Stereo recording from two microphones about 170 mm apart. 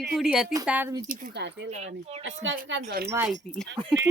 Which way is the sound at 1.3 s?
90° right.